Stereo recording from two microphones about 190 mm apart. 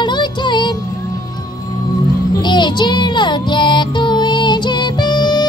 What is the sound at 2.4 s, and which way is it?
Music, 25° left (ahead or behind).